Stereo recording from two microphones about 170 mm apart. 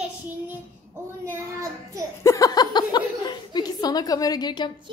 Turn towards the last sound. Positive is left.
turn(degrees=25)  # may be behind; listen again after turning